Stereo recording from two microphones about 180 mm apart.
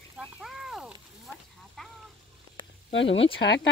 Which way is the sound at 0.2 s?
Centre (ahead or behind).